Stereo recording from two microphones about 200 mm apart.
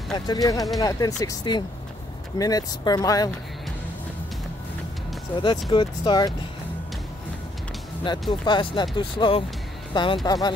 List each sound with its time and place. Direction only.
0.1 s speech: 20° left (ahead or behind)
5.3 s speech: 25° left (ahead or behind)
8.0 s speech: 20° left (ahead or behind)